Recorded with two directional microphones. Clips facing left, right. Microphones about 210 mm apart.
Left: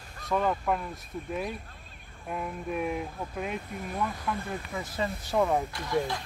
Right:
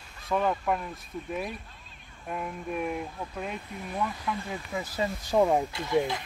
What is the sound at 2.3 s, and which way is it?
Speech, centre (ahead or behind).